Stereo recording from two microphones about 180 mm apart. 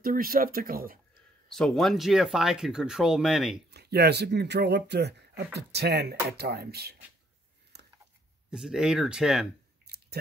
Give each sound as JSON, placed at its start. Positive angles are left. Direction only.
{"t": 0.0, "sound": "speech", "side_deg": -55}
{"t": 1.5, "sound": "speech", "side_deg": 5}
{"t": 3.7, "sound": "speech", "side_deg": -60}
{"t": 7.7, "sound": "a sound", "side_deg": -65}
{"t": 8.5, "sound": "speech", "side_deg": -5}
{"t": 9.8, "sound": "chewing", "side_deg": -60}